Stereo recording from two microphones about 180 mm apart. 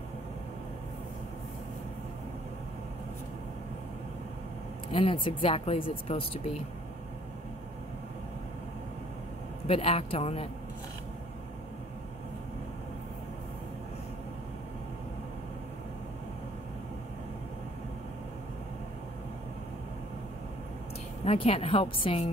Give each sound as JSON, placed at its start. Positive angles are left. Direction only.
{"t": 4.9, "sound": "speech", "side_deg": 30}
{"t": 9.7, "sound": "speech", "side_deg": 35}
{"t": 21.2, "sound": "speech", "side_deg": 35}